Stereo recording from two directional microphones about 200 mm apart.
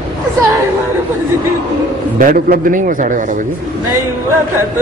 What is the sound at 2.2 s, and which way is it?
A man's voice, 45° right (ahead or behind).